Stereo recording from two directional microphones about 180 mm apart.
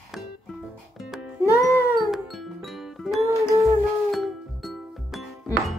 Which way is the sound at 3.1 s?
15° right (ahead or behind).